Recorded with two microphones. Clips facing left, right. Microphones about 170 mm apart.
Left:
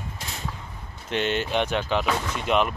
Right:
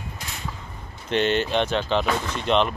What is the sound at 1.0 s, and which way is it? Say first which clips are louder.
Speech: right 4 dB; 5° left (ahead or behind).